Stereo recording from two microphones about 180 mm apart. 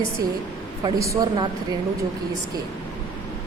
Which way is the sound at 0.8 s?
20° right (ahead or behind).